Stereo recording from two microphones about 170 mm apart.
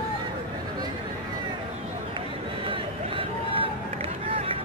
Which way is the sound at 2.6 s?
30° right (ahead or behind).